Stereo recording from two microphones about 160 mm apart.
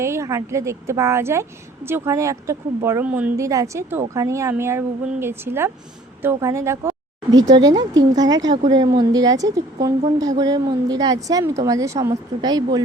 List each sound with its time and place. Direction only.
0.0 s a woman's voice: 15° right (ahead or behind)